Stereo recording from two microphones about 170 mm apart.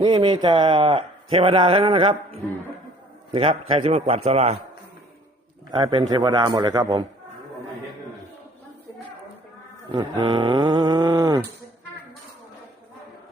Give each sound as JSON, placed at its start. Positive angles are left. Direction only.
{"t": 0.0, "sound": "speech", "side_deg": -25}
{"t": 3.7, "sound": "speech", "side_deg": -35}
{"t": 5.7, "sound": "speech", "side_deg": -25}
{"t": 9.9, "sound": "speech", "side_deg": -25}